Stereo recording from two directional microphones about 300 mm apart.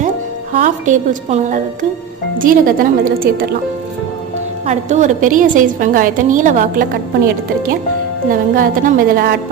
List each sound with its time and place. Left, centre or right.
0.6 s a woman's voice: right
4.6 s a woman's voice: right
8.3 s a woman's voice: right